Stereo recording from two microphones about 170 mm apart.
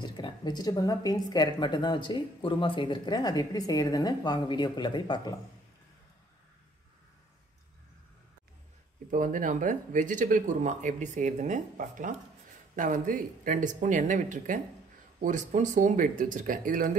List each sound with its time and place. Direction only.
0.0 s speech: 25° left (ahead or behind)
9.1 s speech: 50° right (ahead or behind)